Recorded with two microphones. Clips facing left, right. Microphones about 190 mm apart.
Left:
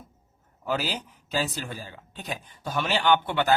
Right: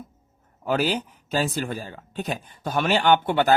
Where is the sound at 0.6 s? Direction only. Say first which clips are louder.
Right 6 dB; 55° right (ahead or behind).